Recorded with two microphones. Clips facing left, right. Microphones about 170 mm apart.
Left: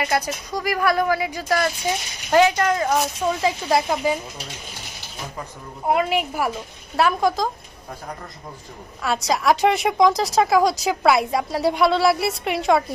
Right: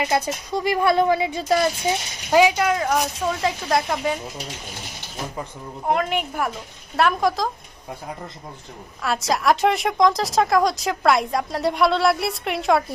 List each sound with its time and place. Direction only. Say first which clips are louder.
0.0 s speech: right 1 dB; 25° right (ahead or behind)
2.3 s a woman's voice: even; 10° right (ahead or behind)
5.9 s a woman's voice: left 2 dB; 5° left (ahead or behind)
9.0 s a woman's voice: even; centre (ahead or behind)